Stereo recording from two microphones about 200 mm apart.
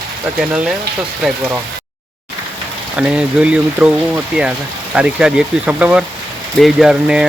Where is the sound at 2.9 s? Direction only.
5° right (ahead or behind).